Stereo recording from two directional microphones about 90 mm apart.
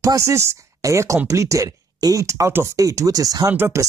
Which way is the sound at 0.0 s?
35° right (ahead or behind).